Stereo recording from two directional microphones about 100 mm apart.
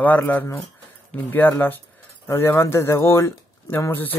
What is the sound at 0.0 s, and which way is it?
Speech, 15° left (ahead or behind).